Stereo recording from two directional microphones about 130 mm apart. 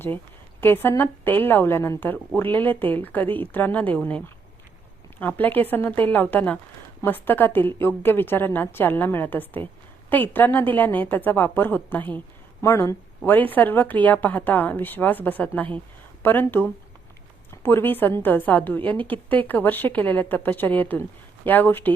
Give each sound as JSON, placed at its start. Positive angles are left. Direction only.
{"t": 0.6, "sound": "a woman's voice", "side_deg": 15}
{"t": 5.2, "sound": "a woman's voice", "side_deg": 15}